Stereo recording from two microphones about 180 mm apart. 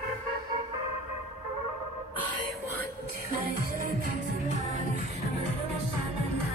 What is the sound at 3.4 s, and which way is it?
Music, 50° right (ahead or behind).